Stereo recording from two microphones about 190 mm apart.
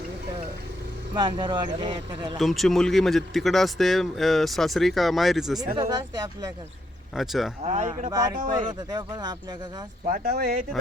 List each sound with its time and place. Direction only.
1.1 s speech: 25° right (ahead or behind)
2.4 s a man's voice: centre (ahead or behind)
5.5 s speech: 20° right (ahead or behind)
7.2 s a man's voice: centre (ahead or behind)
7.6 s speech: 35° right (ahead or behind)
8.1 s speech: 20° right (ahead or behind)
10.1 s speech: 50° right (ahead or behind)